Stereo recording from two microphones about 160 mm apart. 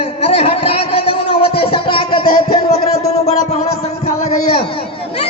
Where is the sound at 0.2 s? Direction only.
40° left (ahead or behind).